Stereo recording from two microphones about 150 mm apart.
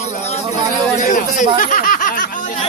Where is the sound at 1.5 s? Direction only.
65° left (ahead or behind).